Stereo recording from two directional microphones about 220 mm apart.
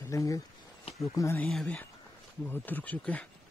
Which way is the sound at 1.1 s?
15° left (ahead or behind).